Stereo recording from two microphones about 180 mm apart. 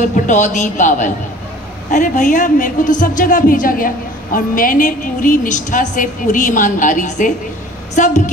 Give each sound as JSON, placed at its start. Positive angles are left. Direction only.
{"t": 0.0, "sound": "a woman's voice", "side_deg": 45}